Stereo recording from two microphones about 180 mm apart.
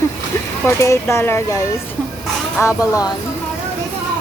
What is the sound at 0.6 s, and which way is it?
Speech, 15° left (ahead or behind).